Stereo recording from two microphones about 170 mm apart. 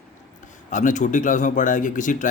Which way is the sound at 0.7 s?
50° left (ahead or behind).